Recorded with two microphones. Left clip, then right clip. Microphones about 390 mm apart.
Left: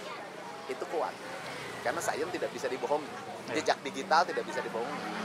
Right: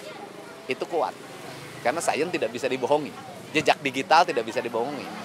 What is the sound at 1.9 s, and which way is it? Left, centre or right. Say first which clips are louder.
Speech: right 8 dB; right.